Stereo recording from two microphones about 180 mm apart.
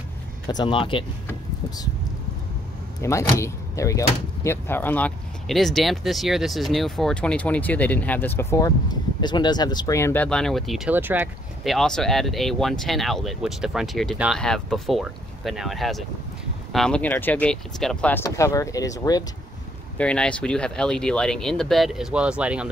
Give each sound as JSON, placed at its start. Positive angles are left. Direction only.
{"t": 0.5, "sound": "speech", "side_deg": 25}
{"t": 3.0, "sound": "speech", "side_deg": 15}
{"t": 11.6, "sound": "speech", "side_deg": 0}
{"t": 20.0, "sound": "speech", "side_deg": 5}